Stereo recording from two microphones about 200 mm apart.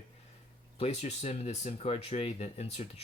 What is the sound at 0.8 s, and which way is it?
Speech, 30° left (ahead or behind).